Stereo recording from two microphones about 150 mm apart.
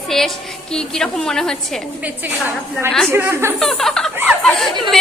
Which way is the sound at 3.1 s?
15° right (ahead or behind).